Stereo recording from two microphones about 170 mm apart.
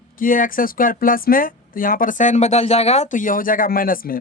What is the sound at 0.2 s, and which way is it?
Speech, 55° left (ahead or behind).